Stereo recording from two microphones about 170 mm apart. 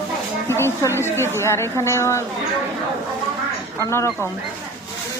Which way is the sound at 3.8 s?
15° left (ahead or behind).